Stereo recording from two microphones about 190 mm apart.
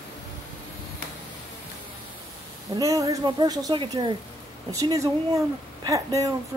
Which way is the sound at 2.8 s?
15° right (ahead or behind).